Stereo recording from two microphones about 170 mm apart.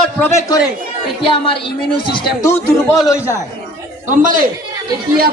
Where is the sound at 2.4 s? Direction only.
15° left (ahead or behind).